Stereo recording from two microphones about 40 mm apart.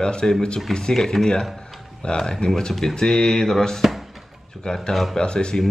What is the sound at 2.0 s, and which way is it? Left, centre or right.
Mantra, centre.